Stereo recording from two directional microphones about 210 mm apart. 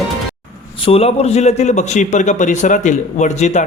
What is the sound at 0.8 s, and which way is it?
A man's voice, 30° left (ahead or behind).